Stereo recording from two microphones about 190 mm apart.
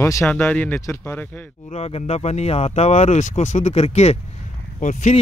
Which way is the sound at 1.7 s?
35° left (ahead or behind).